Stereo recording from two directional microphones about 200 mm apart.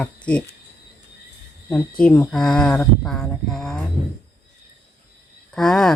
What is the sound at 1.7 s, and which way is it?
Speech, 5° left (ahead or behind).